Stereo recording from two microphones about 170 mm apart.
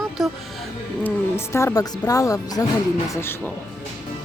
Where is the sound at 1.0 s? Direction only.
15° left (ahead or behind).